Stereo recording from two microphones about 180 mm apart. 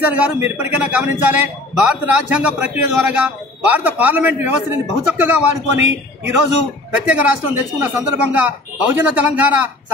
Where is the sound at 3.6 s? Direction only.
10° right (ahead or behind).